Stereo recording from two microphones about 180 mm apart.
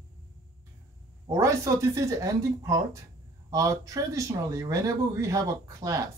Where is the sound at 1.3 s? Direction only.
15° right (ahead or behind).